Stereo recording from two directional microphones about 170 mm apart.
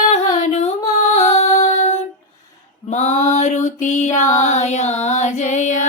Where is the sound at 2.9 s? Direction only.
45° left (ahead or behind).